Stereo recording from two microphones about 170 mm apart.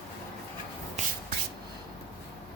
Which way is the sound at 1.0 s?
40° right (ahead or behind).